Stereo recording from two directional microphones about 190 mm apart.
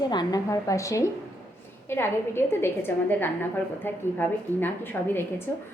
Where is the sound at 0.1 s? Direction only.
20° left (ahead or behind).